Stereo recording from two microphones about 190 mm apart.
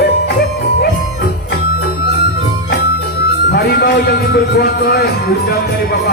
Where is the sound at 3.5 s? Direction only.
55° left (ahead or behind).